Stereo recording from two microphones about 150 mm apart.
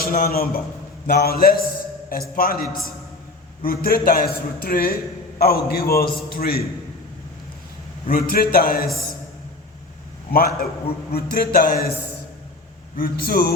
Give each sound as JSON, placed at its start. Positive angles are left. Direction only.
{"t": 0.0, "sound": "a man's voice", "side_deg": 75}
{"t": 2.0, "sound": "a man's voice", "side_deg": 75}
{"t": 5.4, "sound": "a man's voice", "side_deg": 90}
{"t": 8.0, "sound": "a man's voice", "side_deg": 75}
{"t": 10.3, "sound": "a man's voice", "side_deg": 80}
{"t": 13.0, "sound": "a man's voice", "side_deg": 80}